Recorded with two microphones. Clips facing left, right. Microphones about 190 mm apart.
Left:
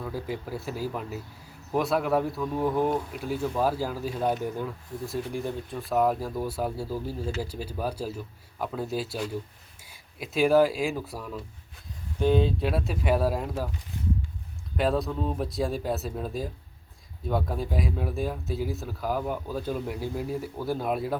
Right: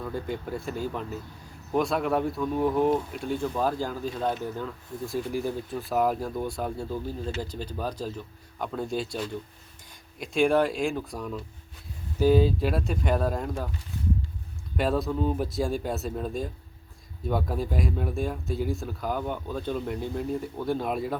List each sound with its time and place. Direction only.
0.0 s speech: 5° left (ahead or behind)
5.0 s speech: centre (ahead or behind)
14.8 s speech: centre (ahead or behind)